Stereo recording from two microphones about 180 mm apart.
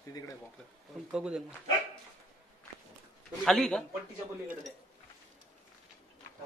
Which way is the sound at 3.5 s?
5° left (ahead or behind).